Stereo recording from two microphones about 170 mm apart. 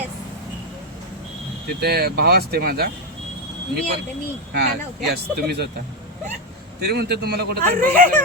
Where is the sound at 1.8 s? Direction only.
70° right (ahead or behind).